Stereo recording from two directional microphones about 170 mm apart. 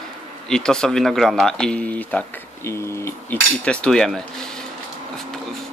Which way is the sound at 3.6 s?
5° left (ahead or behind).